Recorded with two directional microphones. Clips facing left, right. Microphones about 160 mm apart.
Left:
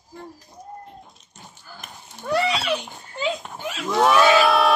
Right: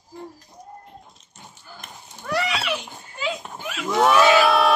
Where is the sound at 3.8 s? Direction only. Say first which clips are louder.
Even; centre (ahead or behind).